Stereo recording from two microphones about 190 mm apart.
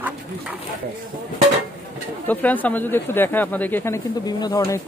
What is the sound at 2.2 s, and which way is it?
Speech, 10° left (ahead or behind).